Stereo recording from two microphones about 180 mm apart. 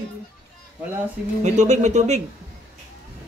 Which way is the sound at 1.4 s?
40° right (ahead or behind).